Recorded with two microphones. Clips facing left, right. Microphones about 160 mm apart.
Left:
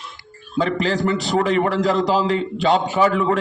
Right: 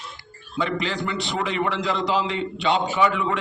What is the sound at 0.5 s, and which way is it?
A man's voice, 40° left (ahead or behind).